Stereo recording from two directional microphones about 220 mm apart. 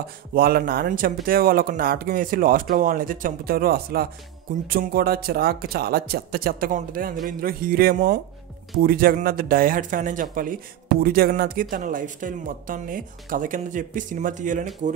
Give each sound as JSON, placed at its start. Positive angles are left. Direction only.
{"t": 0.3, "sound": "speech", "side_deg": -40}